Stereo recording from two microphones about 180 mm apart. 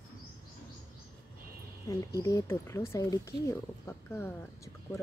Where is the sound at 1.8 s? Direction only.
20° left (ahead or behind).